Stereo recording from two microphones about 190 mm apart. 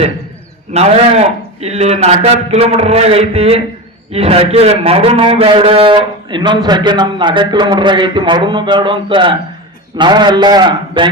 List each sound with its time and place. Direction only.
0.7 s a man's voice: 35° right (ahead or behind)